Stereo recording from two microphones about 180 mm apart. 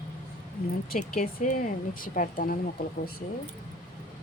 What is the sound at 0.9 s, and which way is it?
Speech, 45° left (ahead or behind).